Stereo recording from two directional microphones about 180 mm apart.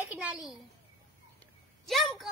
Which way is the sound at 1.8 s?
Centre (ahead or behind).